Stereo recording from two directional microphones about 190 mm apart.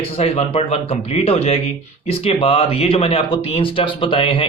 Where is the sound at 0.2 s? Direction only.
35° left (ahead or behind).